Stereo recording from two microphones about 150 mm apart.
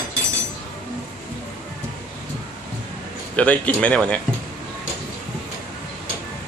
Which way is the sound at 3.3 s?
10° left (ahead or behind).